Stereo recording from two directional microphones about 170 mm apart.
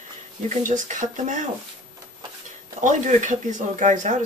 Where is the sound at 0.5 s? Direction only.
45° right (ahead or behind).